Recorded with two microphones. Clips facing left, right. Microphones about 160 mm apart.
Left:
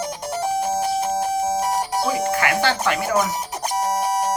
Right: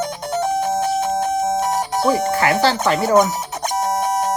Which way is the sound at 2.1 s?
35° right (ahead or behind).